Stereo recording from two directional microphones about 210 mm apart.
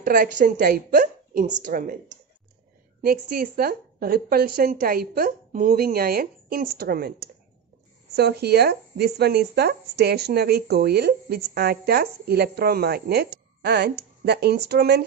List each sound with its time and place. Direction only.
0.0 s a woman's voice: 40° right (ahead or behind)
3.0 s speech: 45° right (ahead or behind)